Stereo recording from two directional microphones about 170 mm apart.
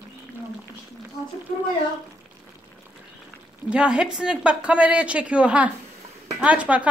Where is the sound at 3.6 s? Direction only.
5° right (ahead or behind).